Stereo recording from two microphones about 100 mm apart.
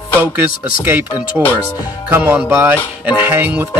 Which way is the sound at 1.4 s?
15° right (ahead or behind).